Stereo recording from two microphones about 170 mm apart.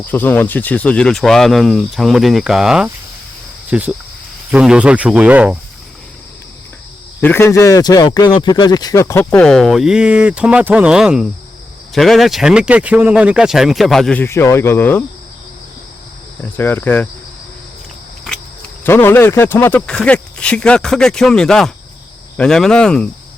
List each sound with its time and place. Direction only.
0.0 s speech: 10° left (ahead or behind); by 5.5 s 10° right (ahead or behind)
7.2 s speech: 10° left (ahead or behind)
9.4 s speech: centre (ahead or behind)
16.4 s speech: 10° left (ahead or behind)
18.9 s speech: 15° left (ahead or behind)